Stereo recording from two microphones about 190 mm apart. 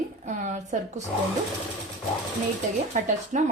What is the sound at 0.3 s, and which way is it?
Speech, 40° right (ahead or behind).